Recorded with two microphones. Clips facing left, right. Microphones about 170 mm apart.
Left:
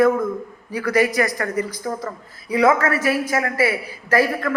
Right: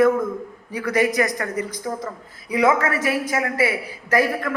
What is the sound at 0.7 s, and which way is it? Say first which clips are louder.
A man's voice: left 1 dB; 25° right (ahead or behind).